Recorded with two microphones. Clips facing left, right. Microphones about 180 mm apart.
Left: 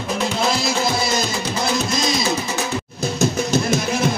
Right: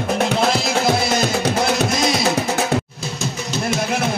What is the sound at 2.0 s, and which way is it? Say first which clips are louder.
Music: right 3 dB; 60° right (ahead or behind).